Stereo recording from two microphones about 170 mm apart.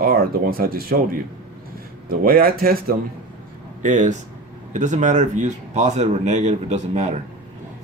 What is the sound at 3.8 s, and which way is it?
Speech, 50° right (ahead or behind).